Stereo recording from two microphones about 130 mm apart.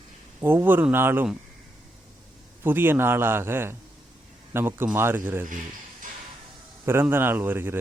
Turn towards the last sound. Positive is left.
turn(degrees=-15)  # may be behind; listen again after turning